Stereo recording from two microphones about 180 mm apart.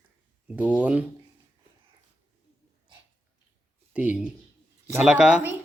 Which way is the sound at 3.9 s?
5° right (ahead or behind).